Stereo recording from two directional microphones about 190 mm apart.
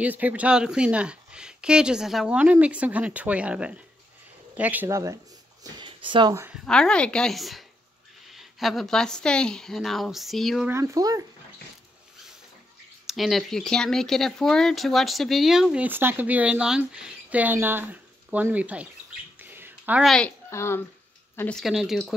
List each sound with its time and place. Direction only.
0.0 s speech: 10° right (ahead or behind)
5.6 s a sound: 25° right (ahead or behind)
6.3 s speech: 10° right (ahead or behind)
6.6 s speech: 5° left (ahead or behind)
10.7 s speech: 15° right (ahead or behind)
13.0 s speech: centre (ahead or behind)
19.4 s a sound: 10° right (ahead or behind); by 20.8 s 15° left (ahead or behind)
21.4 s speech: 5° left (ahead or behind)